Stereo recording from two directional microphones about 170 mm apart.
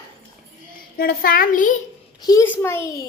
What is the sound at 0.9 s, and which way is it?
Speech, 60° left (ahead or behind).